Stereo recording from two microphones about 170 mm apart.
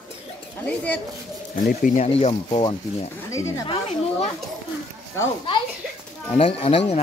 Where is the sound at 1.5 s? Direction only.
55° left (ahead or behind).